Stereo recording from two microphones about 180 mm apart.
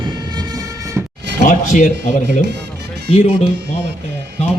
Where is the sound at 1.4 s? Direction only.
45° left (ahead or behind).